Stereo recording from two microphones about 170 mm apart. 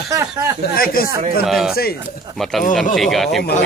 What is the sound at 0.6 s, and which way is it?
Speech, 60° left (ahead or behind).